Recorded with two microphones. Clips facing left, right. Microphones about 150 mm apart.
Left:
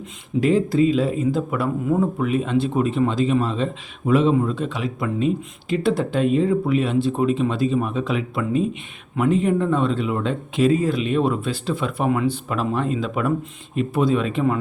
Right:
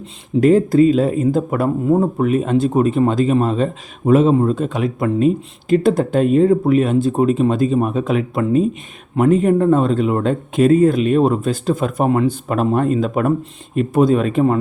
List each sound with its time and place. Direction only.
0.3 s speech: 45° right (ahead or behind)